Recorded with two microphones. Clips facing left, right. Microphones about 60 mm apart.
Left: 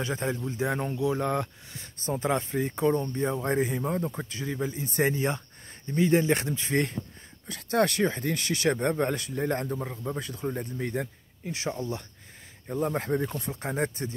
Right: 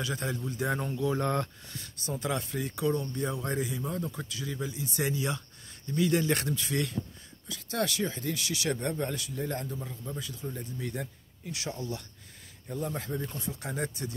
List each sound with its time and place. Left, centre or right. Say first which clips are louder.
0.0 s speech: left 4 dB; left
1.8 s speech: left 5 dB; left
7.4 s speech: left 7 dB; left
11.0 s speech: left 6 dB; left
12.8 s speech: left 7 dB; left
13.5 s speech: left 3 dB; left